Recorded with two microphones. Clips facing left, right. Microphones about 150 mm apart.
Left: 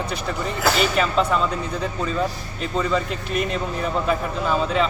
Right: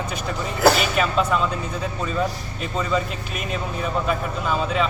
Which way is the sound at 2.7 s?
5° right (ahead or behind).